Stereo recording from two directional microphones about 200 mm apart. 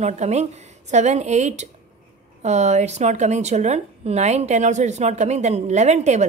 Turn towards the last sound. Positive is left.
turn(degrees=-35)  # may be behind; listen again after turning